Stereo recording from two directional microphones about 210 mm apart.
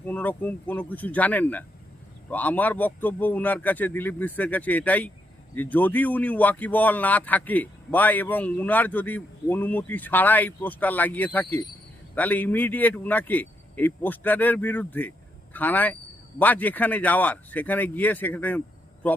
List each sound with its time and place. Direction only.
0.0 s speech: 5° left (ahead or behind)